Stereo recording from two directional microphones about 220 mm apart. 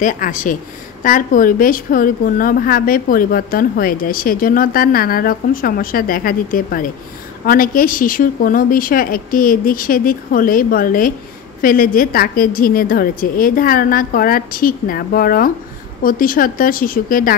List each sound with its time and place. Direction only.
0.0 s a woman's voice: 40° left (ahead or behind)